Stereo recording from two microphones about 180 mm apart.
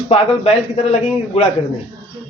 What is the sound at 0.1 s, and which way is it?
A man's voice, 35° left (ahead or behind).